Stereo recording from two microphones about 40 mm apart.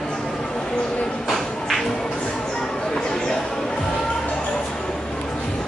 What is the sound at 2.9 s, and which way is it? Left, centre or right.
Chatter, centre.